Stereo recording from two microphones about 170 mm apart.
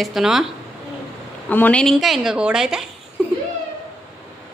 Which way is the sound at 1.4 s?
10° left (ahead or behind).